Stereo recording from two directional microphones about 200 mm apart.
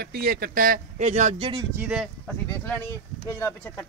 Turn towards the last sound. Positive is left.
turn(degrees=15)  # may be behind; listen again after turning